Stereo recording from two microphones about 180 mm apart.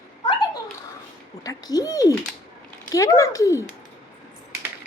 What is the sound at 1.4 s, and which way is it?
A woman's voice, 20° left (ahead or behind).